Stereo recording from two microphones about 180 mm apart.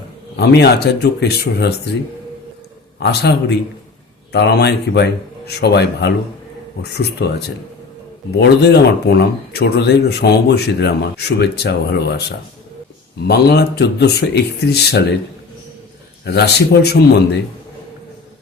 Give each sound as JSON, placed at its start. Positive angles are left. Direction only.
{"t": 0.3, "sound": "speech", "side_deg": 65}
{"t": 3.0, "sound": "speech", "side_deg": 65}
{"t": 7.2, "sound": "speech", "side_deg": 70}
{"t": 8.4, "sound": "speech", "side_deg": 70}
{"t": 13.2, "sound": "speech", "side_deg": 65}
{"t": 16.2, "sound": "speech", "side_deg": 70}